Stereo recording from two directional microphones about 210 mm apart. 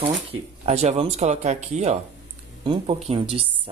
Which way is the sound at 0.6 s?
30° right (ahead or behind).